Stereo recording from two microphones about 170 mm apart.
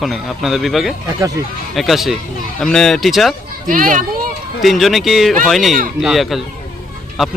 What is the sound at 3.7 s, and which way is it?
Speech, 50° right (ahead or behind).